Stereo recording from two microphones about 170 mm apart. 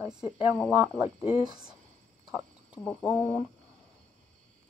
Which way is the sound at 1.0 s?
30° left (ahead or behind).